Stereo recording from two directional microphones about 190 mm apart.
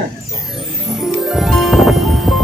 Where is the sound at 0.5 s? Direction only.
Centre (ahead or behind).